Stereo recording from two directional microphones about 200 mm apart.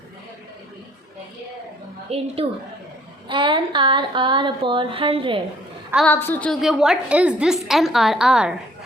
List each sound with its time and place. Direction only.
2.0 s speech: 30° right (ahead or behind)
6.1 s a woman's voice: 10° left (ahead or behind)